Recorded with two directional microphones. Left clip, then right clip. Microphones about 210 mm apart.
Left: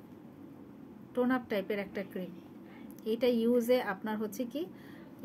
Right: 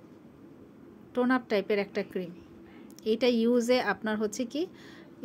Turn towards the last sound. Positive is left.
turn(degrees=-40)  # may be behind; listen again after turning